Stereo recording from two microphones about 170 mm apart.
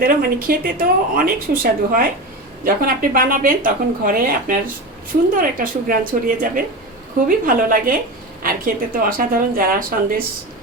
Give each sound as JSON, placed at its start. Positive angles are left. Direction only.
{"t": 0.0, "sound": "a woman's voice", "side_deg": -60}